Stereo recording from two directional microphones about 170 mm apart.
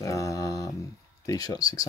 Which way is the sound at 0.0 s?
20° left (ahead or behind).